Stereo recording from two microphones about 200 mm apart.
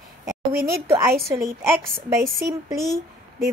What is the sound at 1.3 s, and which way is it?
A woman's voice, 10° right (ahead or behind).